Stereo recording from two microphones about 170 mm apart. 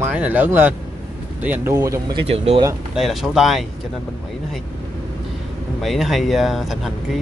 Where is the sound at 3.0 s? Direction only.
Centre (ahead or behind).